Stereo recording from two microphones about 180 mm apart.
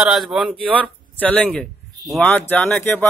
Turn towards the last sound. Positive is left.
turn(degrees=10)  # may be behind; listen again after turning